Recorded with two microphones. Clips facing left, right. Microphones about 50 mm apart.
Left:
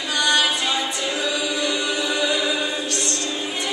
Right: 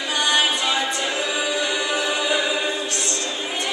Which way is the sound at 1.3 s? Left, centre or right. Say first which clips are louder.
Even; right.